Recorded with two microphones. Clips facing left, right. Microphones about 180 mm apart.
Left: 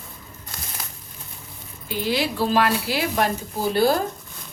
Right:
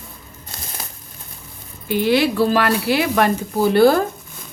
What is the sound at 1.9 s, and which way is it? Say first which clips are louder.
Speech: right 8 dB; 65° right (ahead or behind).